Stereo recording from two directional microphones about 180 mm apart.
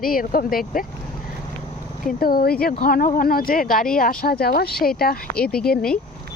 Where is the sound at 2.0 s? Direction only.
55° left (ahead or behind).